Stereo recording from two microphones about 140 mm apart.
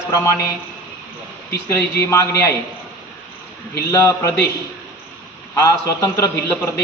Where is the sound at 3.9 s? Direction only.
15° left (ahead or behind).